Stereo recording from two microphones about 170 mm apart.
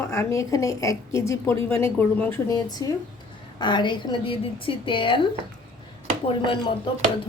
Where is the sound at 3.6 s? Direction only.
25° left (ahead or behind).